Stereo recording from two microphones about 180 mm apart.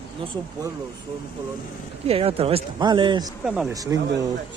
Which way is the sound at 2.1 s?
30° right (ahead or behind).